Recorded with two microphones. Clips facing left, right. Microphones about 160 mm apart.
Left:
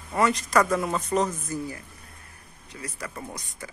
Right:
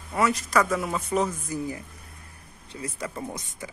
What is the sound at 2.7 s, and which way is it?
Speech, 25° right (ahead or behind).